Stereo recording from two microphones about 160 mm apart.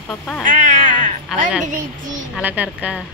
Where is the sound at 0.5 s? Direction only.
50° right (ahead or behind).